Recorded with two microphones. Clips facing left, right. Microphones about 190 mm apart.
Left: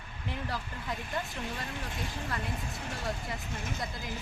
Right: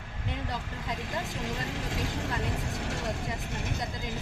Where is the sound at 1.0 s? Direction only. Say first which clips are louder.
Right 2 dB; 90° right.